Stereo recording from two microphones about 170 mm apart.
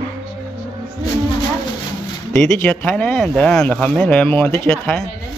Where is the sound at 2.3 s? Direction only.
5° left (ahead or behind).